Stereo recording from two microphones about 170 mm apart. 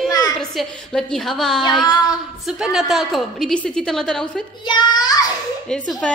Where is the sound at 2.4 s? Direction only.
Centre (ahead or behind).